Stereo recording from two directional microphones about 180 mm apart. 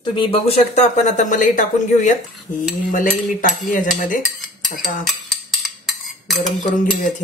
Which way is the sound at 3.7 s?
45° left (ahead or behind).